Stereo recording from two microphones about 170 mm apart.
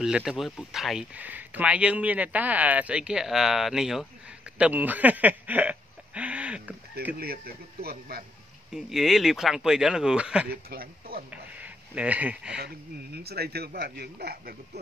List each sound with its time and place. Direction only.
0.0 s speech: 5° right (ahead or behind)
7.2 s speech: 65° right (ahead or behind)
8.7 s speech: centre (ahead or behind)
10.5 s speech: 65° right (ahead or behind)
11.2 s speech: 10° right (ahead or behind)
12.5 s speech: 70° right (ahead or behind)